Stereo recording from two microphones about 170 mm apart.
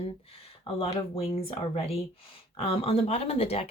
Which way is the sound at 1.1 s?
35° left (ahead or behind).